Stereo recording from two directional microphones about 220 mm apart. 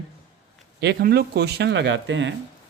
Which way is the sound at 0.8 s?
45° right (ahead or behind).